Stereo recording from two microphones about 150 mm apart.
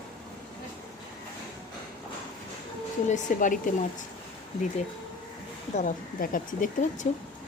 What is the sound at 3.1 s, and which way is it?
Speech, 60° left (ahead or behind).